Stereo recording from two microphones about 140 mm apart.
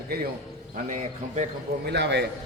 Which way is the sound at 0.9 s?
60° right (ahead or behind).